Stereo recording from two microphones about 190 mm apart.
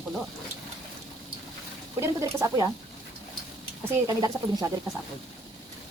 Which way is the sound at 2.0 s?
15° right (ahead or behind).